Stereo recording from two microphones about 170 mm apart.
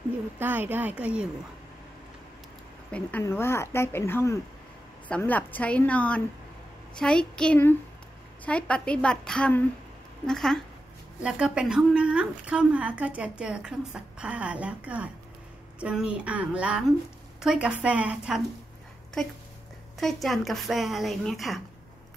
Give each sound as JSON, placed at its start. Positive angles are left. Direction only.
{"t": 0.4, "sound": "a woman's voice", "side_deg": -10}
{"t": 2.9, "sound": "a woman's voice", "side_deg": 10}
{"t": 20.0, "sound": "speech", "side_deg": 0}